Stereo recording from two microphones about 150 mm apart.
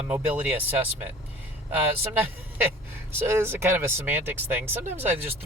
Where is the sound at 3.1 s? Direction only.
15° right (ahead or behind).